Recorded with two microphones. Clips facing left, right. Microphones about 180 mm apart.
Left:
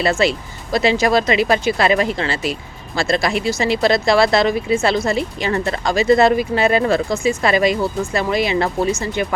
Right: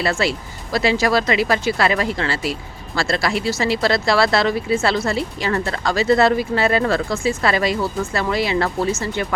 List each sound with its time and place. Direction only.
0.0 s speech: 20° left (ahead or behind)